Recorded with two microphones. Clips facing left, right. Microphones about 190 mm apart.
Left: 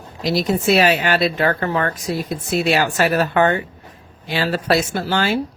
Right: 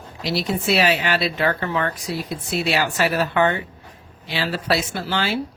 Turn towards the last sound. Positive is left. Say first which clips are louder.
# left 4 dB
turn(degrees=45)  # may be behind; listen again after turning